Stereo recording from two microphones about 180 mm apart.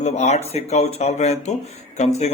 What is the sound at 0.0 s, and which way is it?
Speech, 40° left (ahead or behind).